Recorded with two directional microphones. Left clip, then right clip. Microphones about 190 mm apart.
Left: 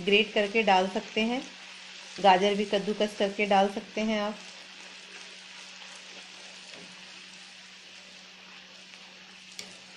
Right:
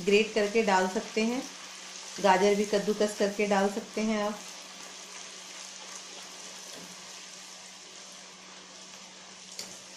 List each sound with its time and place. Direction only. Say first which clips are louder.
0.0 s speech: left 1 dB; 40° left (ahead or behind)
2.2 s speech: left 2 dB; 35° left (ahead or behind)